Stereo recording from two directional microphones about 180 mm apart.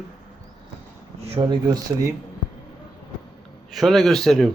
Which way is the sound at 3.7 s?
Centre (ahead or behind).